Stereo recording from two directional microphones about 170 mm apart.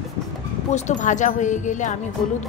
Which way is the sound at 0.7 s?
45° left (ahead or behind).